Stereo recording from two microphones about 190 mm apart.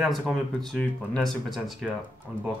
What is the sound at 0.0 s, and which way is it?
Speech, centre (ahead or behind).